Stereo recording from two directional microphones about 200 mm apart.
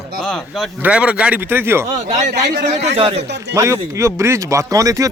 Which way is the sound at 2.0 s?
35° right (ahead or behind).